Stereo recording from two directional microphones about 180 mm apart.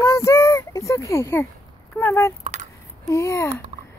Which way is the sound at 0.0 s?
20° left (ahead or behind).